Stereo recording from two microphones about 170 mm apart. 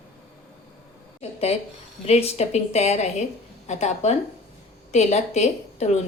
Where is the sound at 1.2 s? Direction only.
35° left (ahead or behind).